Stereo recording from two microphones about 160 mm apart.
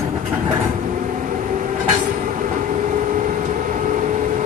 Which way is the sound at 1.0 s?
50° right (ahead or behind).